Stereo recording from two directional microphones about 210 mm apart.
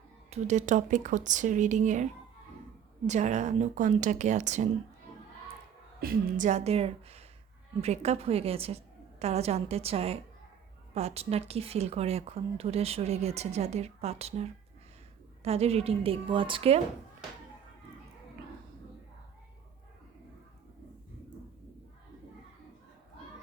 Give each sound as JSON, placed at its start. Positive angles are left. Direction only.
{"t": 0.3, "sound": "speech", "side_deg": -35}
{"t": 3.1, "sound": "speech", "side_deg": -35}
{"t": 6.0, "sound": "speech", "side_deg": -40}